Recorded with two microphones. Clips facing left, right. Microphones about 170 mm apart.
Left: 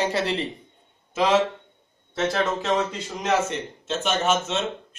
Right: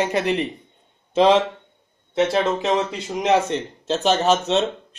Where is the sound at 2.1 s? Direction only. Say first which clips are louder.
Right 5 dB; 20° right (ahead or behind).